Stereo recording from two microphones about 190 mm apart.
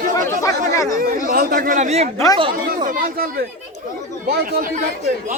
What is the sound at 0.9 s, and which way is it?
Speech, 45° right (ahead or behind).